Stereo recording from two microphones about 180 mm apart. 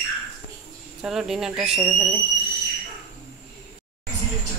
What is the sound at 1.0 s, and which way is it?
Speech, centre (ahead or behind).